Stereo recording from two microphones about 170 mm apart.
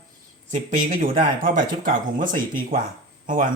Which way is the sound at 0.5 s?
45° right (ahead or behind).